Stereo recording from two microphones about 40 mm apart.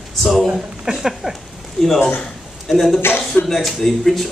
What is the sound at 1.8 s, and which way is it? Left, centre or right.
A man's voice, centre.